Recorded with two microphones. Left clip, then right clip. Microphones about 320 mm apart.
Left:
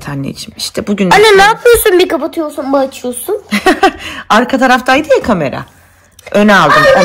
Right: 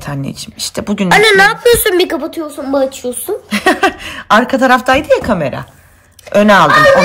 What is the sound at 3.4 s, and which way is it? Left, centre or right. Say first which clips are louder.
Speech: left 2 dB; centre.